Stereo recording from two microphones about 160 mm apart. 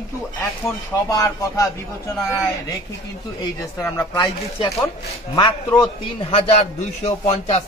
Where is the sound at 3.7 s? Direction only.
20° left (ahead or behind).